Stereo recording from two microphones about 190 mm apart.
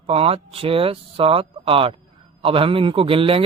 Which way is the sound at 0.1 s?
30° right (ahead or behind).